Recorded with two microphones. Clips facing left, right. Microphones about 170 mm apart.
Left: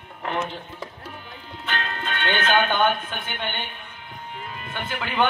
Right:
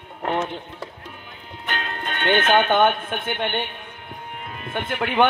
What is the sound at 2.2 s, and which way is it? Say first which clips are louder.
Speech: right 4 dB; 55° right (ahead or behind).